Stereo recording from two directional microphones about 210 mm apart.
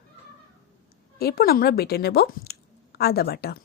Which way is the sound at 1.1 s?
45° left (ahead or behind).